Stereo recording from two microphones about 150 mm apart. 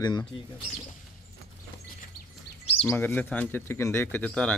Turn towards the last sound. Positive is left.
turn(degrees=5)  # may be behind; listen again after turning